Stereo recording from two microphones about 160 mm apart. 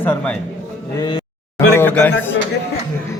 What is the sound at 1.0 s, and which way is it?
Speech, 30° left (ahead or behind).